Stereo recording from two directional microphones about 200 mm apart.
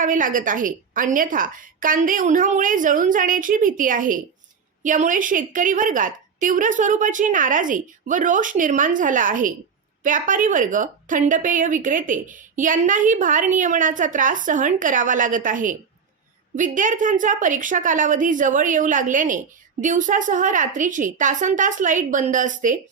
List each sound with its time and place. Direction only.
0.0 s a woman's voice: 40° right (ahead or behind)